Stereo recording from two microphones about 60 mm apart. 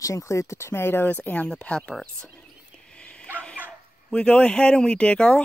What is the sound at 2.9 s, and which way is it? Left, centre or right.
Dog, centre.